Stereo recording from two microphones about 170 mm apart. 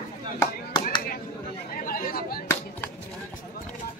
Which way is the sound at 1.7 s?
55° left (ahead or behind).